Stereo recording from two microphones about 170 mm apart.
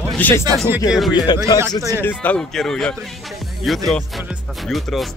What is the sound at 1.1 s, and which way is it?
Speech, 25° left (ahead or behind).